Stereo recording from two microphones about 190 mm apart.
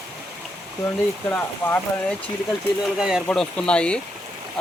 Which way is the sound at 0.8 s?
10° left (ahead or behind).